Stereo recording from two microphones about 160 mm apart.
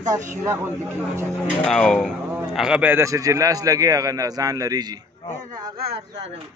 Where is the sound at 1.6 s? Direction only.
5° left (ahead or behind); by 4.8 s 20° right (ahead or behind).